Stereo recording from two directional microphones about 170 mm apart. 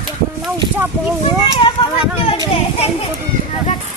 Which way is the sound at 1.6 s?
35° left (ahead or behind).